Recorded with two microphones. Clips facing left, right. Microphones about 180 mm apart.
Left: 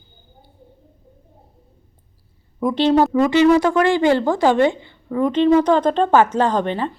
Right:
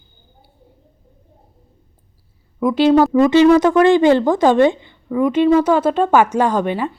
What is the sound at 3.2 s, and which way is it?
Speech, 20° right (ahead or behind).